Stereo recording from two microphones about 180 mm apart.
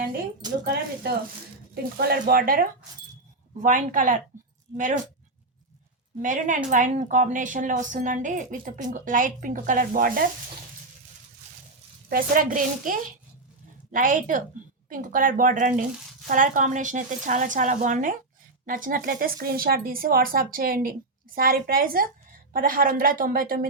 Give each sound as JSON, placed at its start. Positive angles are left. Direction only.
{"t": 0.6, "sound": "a woman's voice", "side_deg": -65}
{"t": 6.2, "sound": "a woman's voice", "side_deg": -45}
{"t": 12.0, "sound": "a woman's voice", "side_deg": -55}